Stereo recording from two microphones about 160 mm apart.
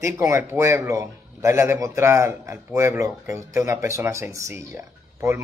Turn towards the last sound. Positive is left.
turn(degrees=-15)  # may be behind; listen again after turning